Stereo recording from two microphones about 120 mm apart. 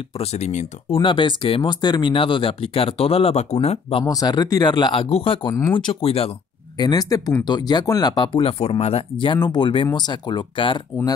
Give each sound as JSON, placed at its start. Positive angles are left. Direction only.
{"t": 0.2, "sound": "speech", "side_deg": 65}
{"t": 0.8, "sound": "speech", "side_deg": 45}
{"t": 4.0, "sound": "speech", "side_deg": 30}
{"t": 6.8, "sound": "speech", "side_deg": 30}